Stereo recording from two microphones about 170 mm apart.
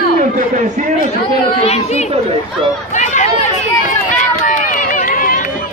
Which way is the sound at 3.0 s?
45° left (ahead or behind).